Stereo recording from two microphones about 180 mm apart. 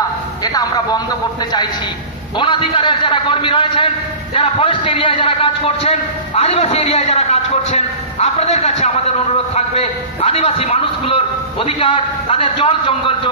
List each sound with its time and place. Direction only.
0.4 s a man's voice: 20° left (ahead or behind)
2.3 s a man's voice: 25° left (ahead or behind)